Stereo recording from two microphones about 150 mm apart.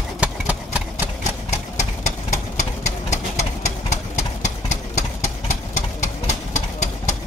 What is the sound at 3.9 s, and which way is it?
Engine, 50° left (ahead or behind).